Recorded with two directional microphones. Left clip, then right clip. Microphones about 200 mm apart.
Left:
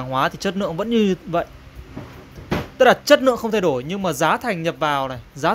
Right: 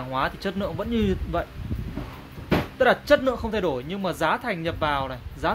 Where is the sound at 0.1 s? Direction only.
35° left (ahead or behind).